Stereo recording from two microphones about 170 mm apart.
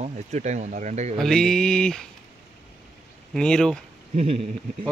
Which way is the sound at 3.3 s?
5° left (ahead or behind).